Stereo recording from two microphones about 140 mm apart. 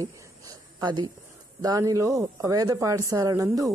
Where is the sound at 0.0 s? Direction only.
25° right (ahead or behind).